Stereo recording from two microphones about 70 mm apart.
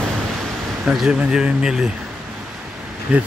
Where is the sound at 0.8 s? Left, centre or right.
Centre.